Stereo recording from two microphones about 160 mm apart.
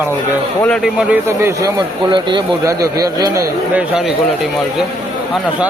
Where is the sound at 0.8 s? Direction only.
5° right (ahead or behind).